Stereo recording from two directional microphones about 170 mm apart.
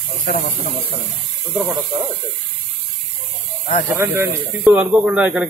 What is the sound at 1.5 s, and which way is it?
Speech, 20° right (ahead or behind).